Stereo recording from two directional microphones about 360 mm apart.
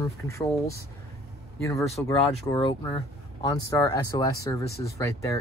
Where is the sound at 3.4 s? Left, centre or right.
Centre.